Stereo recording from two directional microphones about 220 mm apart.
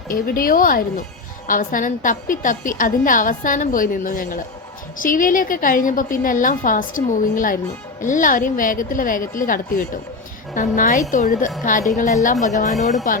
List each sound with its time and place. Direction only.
0.1 s a woman's voice: 40° left (ahead or behind)